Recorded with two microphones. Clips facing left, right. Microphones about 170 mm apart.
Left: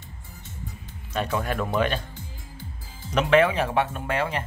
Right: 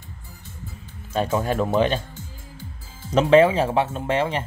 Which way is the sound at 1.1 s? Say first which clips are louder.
Right 4 dB; 30° right (ahead or behind).